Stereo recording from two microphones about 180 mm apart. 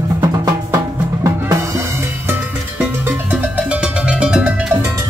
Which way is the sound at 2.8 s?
10° right (ahead or behind).